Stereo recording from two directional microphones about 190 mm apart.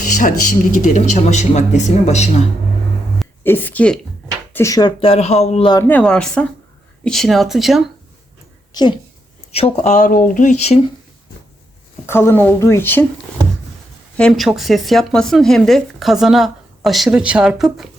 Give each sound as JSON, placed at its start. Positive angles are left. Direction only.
{"t": 0.2, "sound": "a man's voice", "side_deg": 45}
{"t": 3.4, "sound": "speech", "side_deg": 10}
{"t": 4.5, "sound": "speech", "side_deg": 15}
{"t": 5.7, "sound": "speech", "side_deg": 10}
{"t": 8.7, "sound": "a woman's voice", "side_deg": 20}
{"t": 12.0, "sound": "speech", "side_deg": 10}
{"t": 14.2, "sound": "speech", "side_deg": 5}